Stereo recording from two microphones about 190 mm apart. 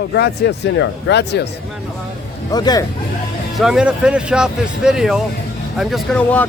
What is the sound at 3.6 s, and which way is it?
Speech, 5° right (ahead or behind).